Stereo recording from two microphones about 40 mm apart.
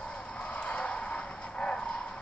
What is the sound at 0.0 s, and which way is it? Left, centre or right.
Vehicle, left.